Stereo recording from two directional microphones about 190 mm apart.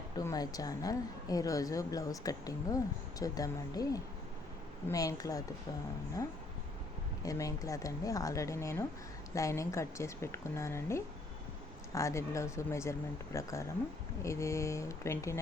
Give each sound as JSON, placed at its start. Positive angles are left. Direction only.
{"t": 0.2, "sound": "a woman's voice", "side_deg": 20}
{"t": 7.2, "sound": "speech", "side_deg": 20}